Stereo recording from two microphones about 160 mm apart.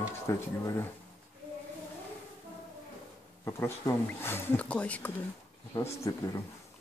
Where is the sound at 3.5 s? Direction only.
15° left (ahead or behind).